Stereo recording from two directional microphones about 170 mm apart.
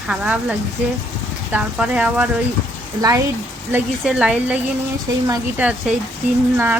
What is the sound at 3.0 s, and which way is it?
Speech, 20° right (ahead or behind).